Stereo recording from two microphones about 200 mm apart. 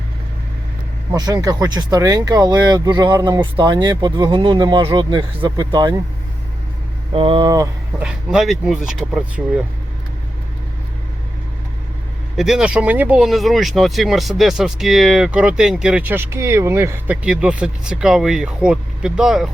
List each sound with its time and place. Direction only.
1.1 s speech: 20° right (ahead or behind)
7.1 s speech: 25° right (ahead or behind)
8.0 s speech: centre (ahead or behind)
12.4 s speech: 5° right (ahead or behind)